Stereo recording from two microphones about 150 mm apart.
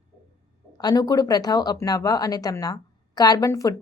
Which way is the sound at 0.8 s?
25° left (ahead or behind).